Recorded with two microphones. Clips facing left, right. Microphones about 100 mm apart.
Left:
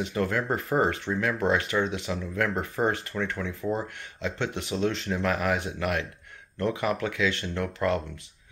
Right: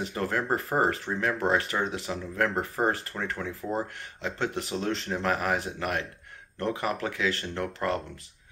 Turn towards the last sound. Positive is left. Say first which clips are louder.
# left 2 dB
turn(degrees=-35)  # may be behind; listen again after turning